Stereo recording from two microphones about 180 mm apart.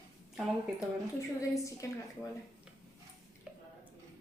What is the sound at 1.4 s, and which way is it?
Speech, 15° left (ahead or behind).